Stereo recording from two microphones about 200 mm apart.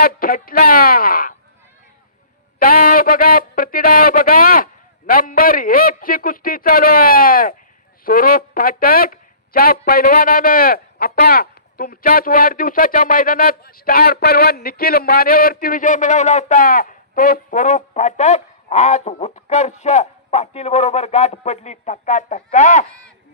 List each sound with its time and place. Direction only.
0.0 s speech: 45° left (ahead or behind)
2.6 s speech: 45° left (ahead or behind)